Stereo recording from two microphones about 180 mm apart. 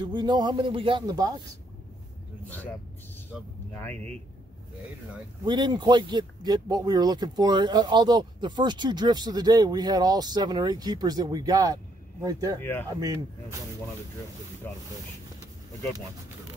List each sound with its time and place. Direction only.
0.0 s speech: 25° right (ahead or behind)
3.7 s speech: 10° left (ahead or behind)
5.4 s speech: 25° right (ahead or behind)
14.7 s speech: 10° left (ahead or behind)